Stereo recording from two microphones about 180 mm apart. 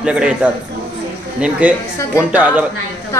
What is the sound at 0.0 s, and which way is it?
Speech, 5° right (ahead or behind).